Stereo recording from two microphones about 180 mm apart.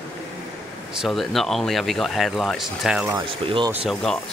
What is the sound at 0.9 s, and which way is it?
A man's voice, centre (ahead or behind).